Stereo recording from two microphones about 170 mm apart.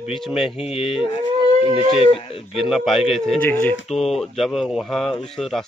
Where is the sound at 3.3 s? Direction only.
10° left (ahead or behind).